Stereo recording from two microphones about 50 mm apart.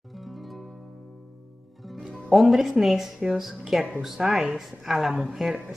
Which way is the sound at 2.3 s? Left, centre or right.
Centre.